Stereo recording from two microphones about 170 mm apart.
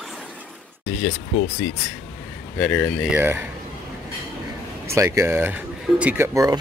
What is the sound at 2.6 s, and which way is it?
Speech, 10° left (ahead or behind).